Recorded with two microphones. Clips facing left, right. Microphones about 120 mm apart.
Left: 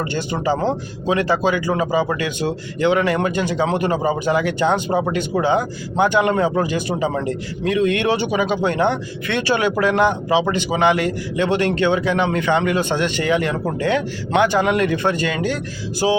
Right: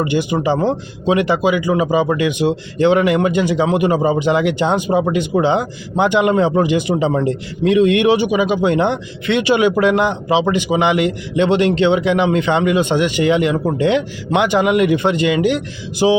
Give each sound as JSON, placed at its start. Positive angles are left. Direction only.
{"t": 0.0, "sound": "speech", "side_deg": -15}
{"t": 3.0, "sound": "a man's voice", "side_deg": -20}